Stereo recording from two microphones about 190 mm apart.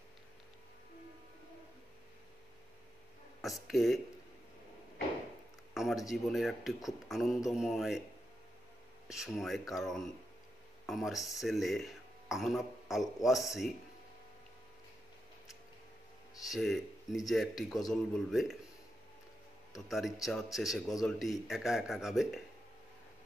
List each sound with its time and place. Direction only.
3.4 s a man's voice: centre (ahead or behind)
5.8 s a man's voice: centre (ahead or behind)
9.1 s a man's voice: 5° right (ahead or behind)
16.4 s a man's voice: centre (ahead or behind)
19.9 s a man's voice: centre (ahead or behind)